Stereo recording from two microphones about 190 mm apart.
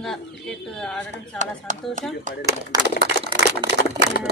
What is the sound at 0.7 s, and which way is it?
Speech, 5° left (ahead or behind).